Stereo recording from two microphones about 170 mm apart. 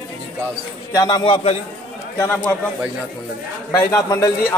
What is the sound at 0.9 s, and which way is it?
Speech, 20° left (ahead or behind).